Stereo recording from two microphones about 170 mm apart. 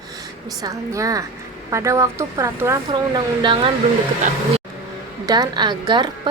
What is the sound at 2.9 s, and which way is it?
Speech, 30° right (ahead or behind).